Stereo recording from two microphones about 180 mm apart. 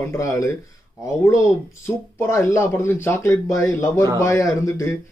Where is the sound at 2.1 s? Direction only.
15° left (ahead or behind).